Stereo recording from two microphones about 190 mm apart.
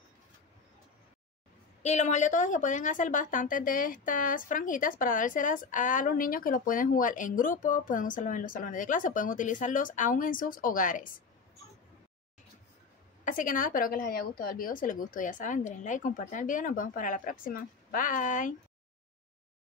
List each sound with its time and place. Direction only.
1.8 s a woman's voice: 35° left (ahead or behind)
13.2 s a woman's voice: 45° left (ahead or behind)